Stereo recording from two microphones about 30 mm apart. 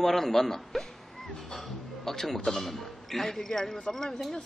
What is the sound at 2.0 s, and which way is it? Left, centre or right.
A man's voice, centre.